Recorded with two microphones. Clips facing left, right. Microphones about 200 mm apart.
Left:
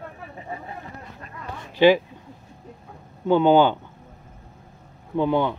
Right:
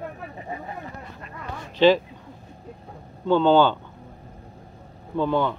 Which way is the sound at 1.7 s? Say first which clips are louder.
Left 1 dB; 10° left (ahead or behind).